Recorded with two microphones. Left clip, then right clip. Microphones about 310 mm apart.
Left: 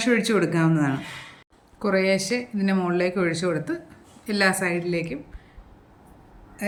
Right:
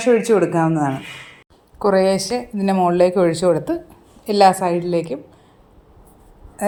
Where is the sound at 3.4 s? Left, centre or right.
Right.